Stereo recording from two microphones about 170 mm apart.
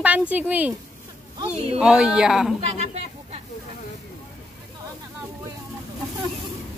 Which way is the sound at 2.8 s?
40° right (ahead or behind).